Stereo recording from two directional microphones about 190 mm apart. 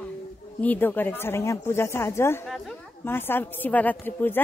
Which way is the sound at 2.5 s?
Centre (ahead or behind).